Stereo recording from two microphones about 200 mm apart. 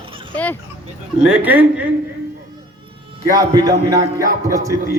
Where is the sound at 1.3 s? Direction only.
10° right (ahead or behind).